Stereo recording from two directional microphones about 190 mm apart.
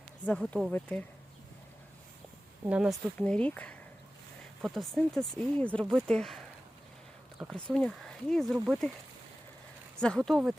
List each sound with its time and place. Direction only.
0.3 s speech: 10° left (ahead or behind)
2.6 s speech: 5° right (ahead or behind)
3.2 s speech: 5° left (ahead or behind)
7.5 s speech: 5° left (ahead or behind)
10.0 s speech: 5° left (ahead or behind)